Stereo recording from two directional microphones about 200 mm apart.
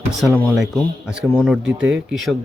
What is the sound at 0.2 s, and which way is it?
Speech, 5° right (ahead or behind).